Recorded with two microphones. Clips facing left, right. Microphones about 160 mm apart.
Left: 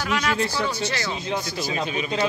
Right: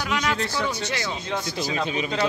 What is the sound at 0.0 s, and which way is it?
Speech, 15° right (ahead or behind).